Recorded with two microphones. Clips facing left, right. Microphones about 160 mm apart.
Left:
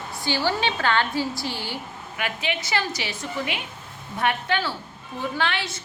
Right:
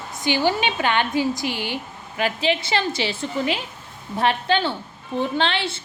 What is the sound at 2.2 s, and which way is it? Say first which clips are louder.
A woman's voice: right 7 dB; 30° right (ahead or behind).